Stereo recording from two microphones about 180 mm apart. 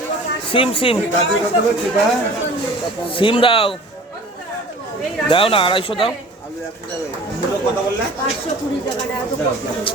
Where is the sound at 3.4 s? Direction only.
30° left (ahead or behind).